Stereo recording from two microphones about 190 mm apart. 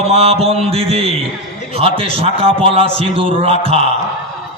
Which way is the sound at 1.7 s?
30° right (ahead or behind).